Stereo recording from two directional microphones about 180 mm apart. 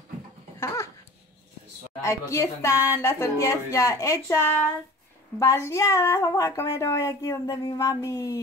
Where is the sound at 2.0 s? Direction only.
15° left (ahead or behind).